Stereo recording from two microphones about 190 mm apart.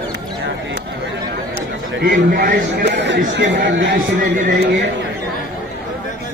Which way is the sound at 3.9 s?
50° right (ahead or behind).